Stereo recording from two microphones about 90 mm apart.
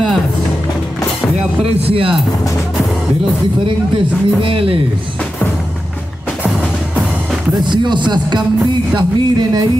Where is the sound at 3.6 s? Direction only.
80° right.